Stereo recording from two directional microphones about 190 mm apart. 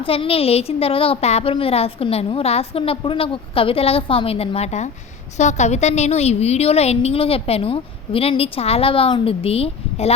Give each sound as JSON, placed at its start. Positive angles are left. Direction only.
{"t": 0.0, "sound": "a woman's voice", "side_deg": 30}